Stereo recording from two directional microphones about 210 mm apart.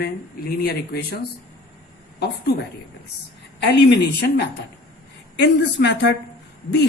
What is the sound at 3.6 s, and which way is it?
Speech, 55° left (ahead or behind).